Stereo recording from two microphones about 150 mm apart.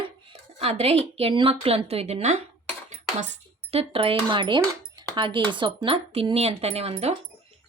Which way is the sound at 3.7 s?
40° right (ahead or behind).